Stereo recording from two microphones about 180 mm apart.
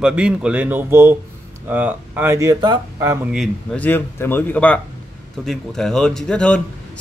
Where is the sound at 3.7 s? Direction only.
10° left (ahead or behind).